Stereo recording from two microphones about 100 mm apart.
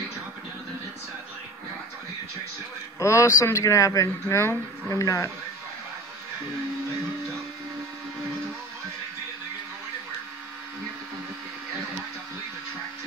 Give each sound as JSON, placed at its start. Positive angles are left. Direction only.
{"t": 3.0, "sound": "speech", "side_deg": 30}